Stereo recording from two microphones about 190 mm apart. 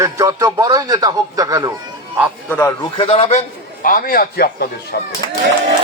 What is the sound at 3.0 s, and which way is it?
Speech, 30° left (ahead or behind).